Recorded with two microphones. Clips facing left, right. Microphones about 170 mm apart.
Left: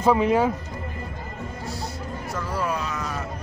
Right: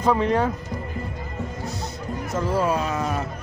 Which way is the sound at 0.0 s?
10° left (ahead or behind).